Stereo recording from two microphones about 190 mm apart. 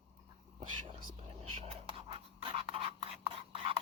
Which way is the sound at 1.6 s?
30° right (ahead or behind).